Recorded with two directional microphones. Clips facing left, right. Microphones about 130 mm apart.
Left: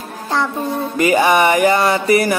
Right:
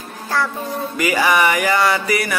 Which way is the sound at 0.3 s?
20° left (ahead or behind).